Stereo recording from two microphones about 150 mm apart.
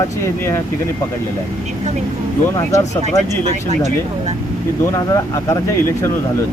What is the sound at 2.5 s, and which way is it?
Speech, 20° left (ahead or behind).